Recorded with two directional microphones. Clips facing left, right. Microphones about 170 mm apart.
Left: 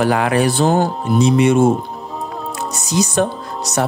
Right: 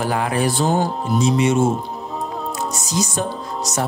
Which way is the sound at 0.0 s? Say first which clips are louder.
Left 5 dB; 75° left (ahead or behind).